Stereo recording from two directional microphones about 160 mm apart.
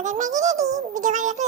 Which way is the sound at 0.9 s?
50° right (ahead or behind).